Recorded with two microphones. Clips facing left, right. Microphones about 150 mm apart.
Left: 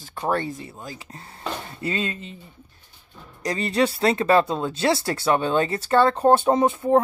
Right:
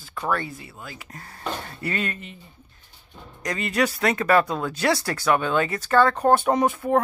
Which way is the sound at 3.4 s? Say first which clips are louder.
Left 2 dB; 30° left (ahead or behind).